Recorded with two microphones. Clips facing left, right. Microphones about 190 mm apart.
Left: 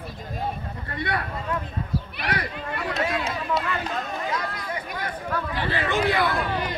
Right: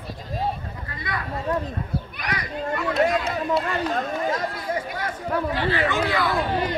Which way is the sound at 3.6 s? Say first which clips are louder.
Right 4 dB; 45° right (ahead or behind).